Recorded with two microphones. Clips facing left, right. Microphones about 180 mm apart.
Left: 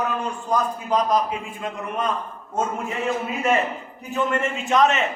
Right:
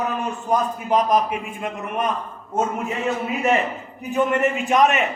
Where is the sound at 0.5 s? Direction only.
20° right (ahead or behind).